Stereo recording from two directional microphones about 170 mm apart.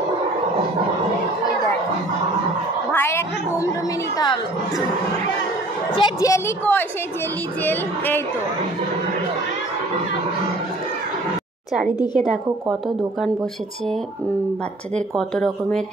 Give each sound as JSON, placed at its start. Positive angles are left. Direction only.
{"t": 2.9, "sound": "speech", "side_deg": 15}
{"t": 5.9, "sound": "speech", "side_deg": 25}
{"t": 15.0, "sound": "speech", "side_deg": 5}